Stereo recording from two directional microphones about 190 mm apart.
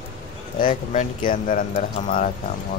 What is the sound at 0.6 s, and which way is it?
Speech, 45° left (ahead or behind).